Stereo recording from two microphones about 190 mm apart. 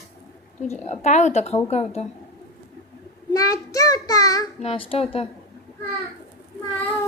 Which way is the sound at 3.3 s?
20° left (ahead or behind).